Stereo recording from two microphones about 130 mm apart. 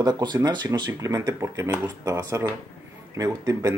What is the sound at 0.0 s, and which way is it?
Speech, 35° right (ahead or behind).